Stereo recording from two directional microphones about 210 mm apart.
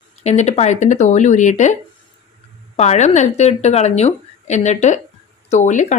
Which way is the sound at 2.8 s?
30° left (ahead or behind).